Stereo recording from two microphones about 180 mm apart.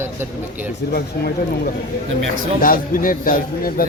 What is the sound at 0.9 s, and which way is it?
A man's voice, 60° left (ahead or behind).